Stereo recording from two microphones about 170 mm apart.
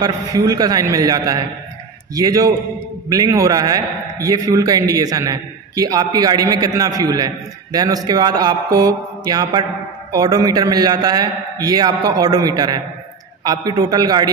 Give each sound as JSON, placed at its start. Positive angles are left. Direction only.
{"t": 0.0, "sound": "a man's voice", "side_deg": -20}